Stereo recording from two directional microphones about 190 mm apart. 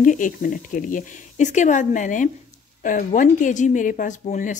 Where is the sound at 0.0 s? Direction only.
45° left (ahead or behind).